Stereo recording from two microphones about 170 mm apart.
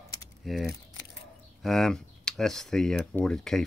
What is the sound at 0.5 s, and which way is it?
Speech, centre (ahead or behind).